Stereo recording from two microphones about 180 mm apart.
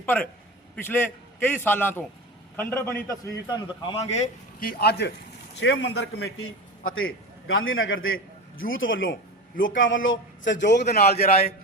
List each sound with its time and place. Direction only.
0.0 s a man's voice: 10° left (ahead or behind)
4.6 s a man's voice: 60° left (ahead or behind)
5.5 s a man's voice: 85° left
7.5 s a man's voice: 90° left
10.9 s a man's voice: 60° left (ahead or behind)
11.2 s a man's voice: 35° left (ahead or behind)